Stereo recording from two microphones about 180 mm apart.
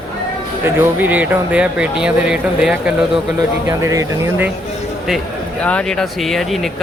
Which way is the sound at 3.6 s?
15° right (ahead or behind).